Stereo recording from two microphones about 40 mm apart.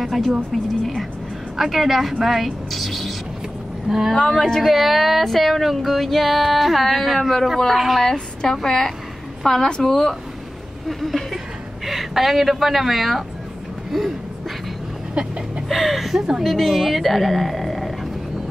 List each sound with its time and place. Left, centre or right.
0.0 s a sound: centre
0.5 s speech: centre
3.9 s speech: centre
4.3 s speech: centre
8.1 s a woman's voice: centre
10.9 s a woman's voice: centre
15.2 s a sound: right
15.7 s speech: centre
16.4 s speech: centre